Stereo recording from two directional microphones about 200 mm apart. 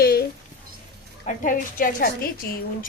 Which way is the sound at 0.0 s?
50° left (ahead or behind).